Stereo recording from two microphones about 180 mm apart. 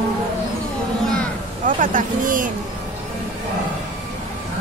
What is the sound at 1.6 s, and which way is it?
Vehicle, 45° right (ahead or behind).